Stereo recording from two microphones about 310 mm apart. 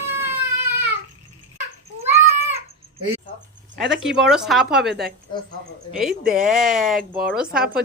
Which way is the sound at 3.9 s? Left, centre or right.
Centre.